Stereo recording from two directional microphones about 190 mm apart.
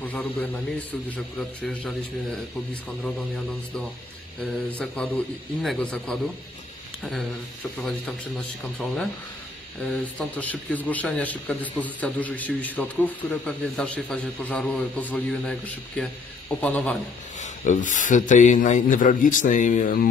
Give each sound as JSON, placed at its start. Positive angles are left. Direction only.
{"t": 0.0, "sound": "a man's voice", "side_deg": 10}
{"t": 4.6, "sound": "a man's voice", "side_deg": 5}
{"t": 8.7, "sound": "a man's voice", "side_deg": 5}
{"t": 17.4, "sound": "a man's voice", "side_deg": 40}